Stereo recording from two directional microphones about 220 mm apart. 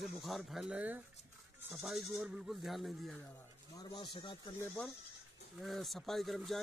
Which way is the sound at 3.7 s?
20° left (ahead or behind).